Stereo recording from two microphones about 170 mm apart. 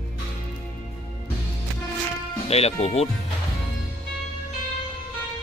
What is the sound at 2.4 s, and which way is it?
Speech, 35° left (ahead or behind).